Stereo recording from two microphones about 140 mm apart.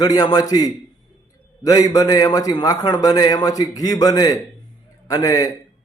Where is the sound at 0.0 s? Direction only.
30° left (ahead or behind).